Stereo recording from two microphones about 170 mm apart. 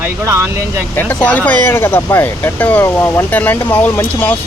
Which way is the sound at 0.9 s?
10° left (ahead or behind).